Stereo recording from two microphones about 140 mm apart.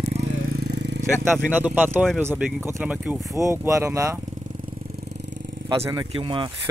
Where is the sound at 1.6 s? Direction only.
15° right (ahead or behind).